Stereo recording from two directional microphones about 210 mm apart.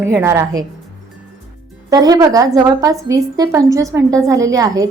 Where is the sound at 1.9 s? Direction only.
20° right (ahead or behind).